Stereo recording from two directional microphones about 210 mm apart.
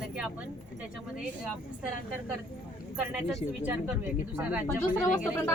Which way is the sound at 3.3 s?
10° right (ahead or behind).